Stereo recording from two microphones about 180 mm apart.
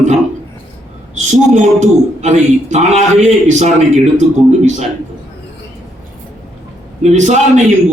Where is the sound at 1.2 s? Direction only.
40° right (ahead or behind).